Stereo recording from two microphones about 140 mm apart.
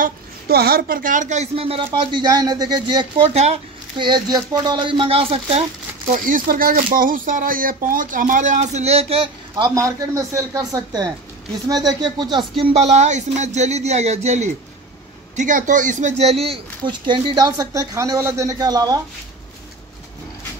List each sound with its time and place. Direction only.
0.0 s a woman's voice: 90° right; by 5.6 s 45° right (ahead or behind)
6.1 s speech: 80° right; by 9.7 s 40° right (ahead or behind)
9.8 s a woman's voice: 25° right (ahead or behind); by 14.5 s 55° right (ahead or behind)
15.3 s speech: 65° right (ahead or behind); by 18.9 s 25° right (ahead or behind)